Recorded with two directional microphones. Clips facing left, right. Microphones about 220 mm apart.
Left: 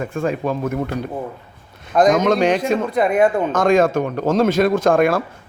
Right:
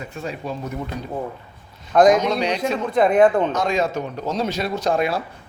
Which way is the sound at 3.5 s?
50° left (ahead or behind).